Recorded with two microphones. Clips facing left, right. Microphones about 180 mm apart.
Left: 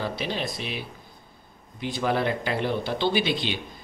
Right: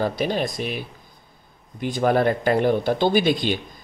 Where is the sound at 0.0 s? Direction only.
45° right (ahead or behind).